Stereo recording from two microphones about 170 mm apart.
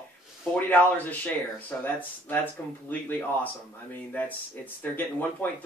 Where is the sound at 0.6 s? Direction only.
10° left (ahead or behind).